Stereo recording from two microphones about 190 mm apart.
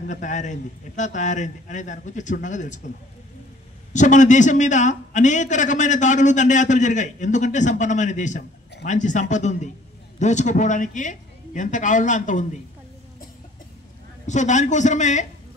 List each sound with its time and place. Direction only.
0.1 s a man's voice: 40° left (ahead or behind)
3.9 s a man's voice: 40° left (ahead or behind)
14.2 s a man's voice: 40° left (ahead or behind)